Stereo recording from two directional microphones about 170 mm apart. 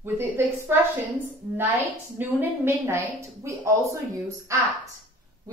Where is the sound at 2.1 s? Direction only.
10° right (ahead or behind).